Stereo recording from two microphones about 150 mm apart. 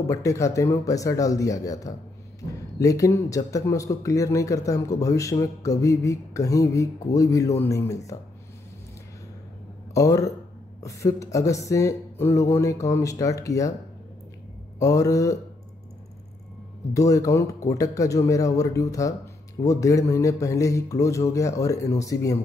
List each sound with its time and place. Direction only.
0.1 s speech: 20° left (ahead or behind)
9.9 s speech: 20° left (ahead or behind)
14.8 s speech: 20° left (ahead or behind)
16.9 s speech: 20° left (ahead or behind)